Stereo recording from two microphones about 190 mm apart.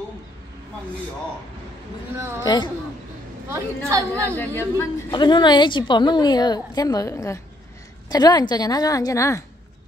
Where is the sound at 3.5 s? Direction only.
15° right (ahead or behind).